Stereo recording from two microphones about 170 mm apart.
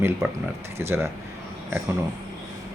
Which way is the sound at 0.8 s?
15° right (ahead or behind).